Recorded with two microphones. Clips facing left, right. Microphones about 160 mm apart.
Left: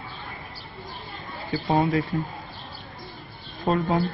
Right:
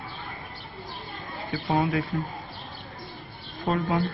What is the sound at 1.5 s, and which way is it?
Speech, 35° left (ahead or behind).